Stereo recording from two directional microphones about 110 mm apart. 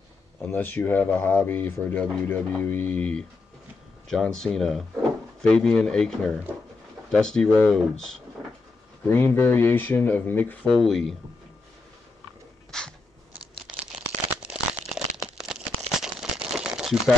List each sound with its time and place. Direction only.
0.5 s speech: 15° left (ahead or behind)
9.0 s speech: 20° left (ahead or behind)
10.8 s speech: centre (ahead or behind)
12.7 s a sound: 5° left (ahead or behind)
13.7 s crumpling: 10° right (ahead or behind)
16.0 s a sound: 5° right (ahead or behind)